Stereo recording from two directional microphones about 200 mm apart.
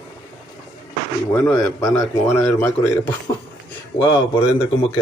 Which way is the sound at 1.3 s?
5° left (ahead or behind).